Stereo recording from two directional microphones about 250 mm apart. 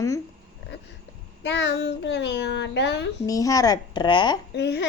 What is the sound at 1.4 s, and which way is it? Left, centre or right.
Babbling, left.